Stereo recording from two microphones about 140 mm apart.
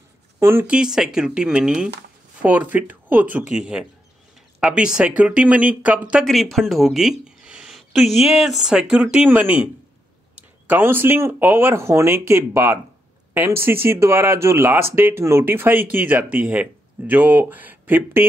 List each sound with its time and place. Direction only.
0.4 s speech: 15° right (ahead or behind)
0.7 s speech: 5° right (ahead or behind)